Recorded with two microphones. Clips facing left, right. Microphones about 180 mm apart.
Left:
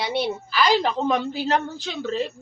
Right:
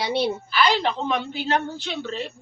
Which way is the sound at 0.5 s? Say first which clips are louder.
Left 2 dB; 40° left (ahead or behind).